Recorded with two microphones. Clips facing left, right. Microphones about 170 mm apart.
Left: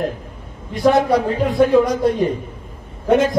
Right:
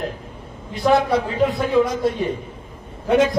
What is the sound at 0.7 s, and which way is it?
Speech, 45° left (ahead or behind).